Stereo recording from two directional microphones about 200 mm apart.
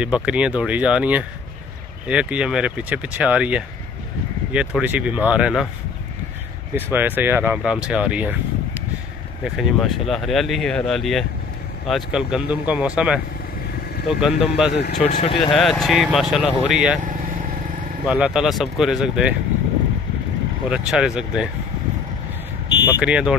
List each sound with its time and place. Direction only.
0.0 s speech: 5° right (ahead or behind)
6.7 s speech: 10° right (ahead or behind)
9.4 s speech: centre (ahead or behind)
14.7 s speech: 55° left (ahead or behind)
15.0 s speech: 40° left (ahead or behind)
15.3 s speech: 25° left (ahead or behind)
15.6 s speech: centre (ahead or behind)
18.0 s speech: 5° right (ahead or behind)
20.7 s speech: 5° right (ahead or behind)
22.9 s speech: 5° right (ahead or behind)